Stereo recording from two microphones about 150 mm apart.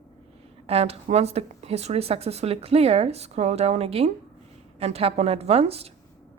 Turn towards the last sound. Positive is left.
turn(degrees=-40)  # may be behind; listen again after turning